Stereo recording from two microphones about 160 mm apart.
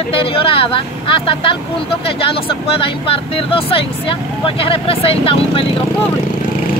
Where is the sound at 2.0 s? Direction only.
35° left (ahead or behind).